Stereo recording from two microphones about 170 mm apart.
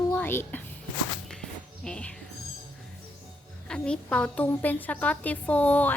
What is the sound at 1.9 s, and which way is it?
Speech, 5° left (ahead or behind).